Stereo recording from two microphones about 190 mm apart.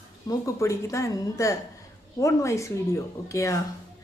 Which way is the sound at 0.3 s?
15° left (ahead or behind).